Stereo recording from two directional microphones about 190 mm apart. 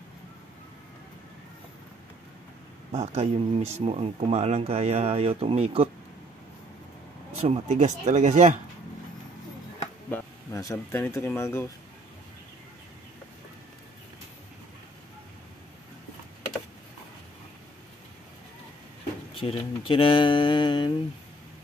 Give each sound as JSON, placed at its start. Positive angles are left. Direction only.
{"t": 2.9, "sound": "speech", "side_deg": -30}
{"t": 7.3, "sound": "speech", "side_deg": -35}
{"t": 10.1, "sound": "speech", "side_deg": 15}
{"t": 19.4, "sound": "speech", "side_deg": 30}